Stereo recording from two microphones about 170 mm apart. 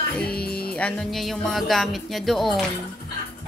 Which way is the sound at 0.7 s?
5° left (ahead or behind).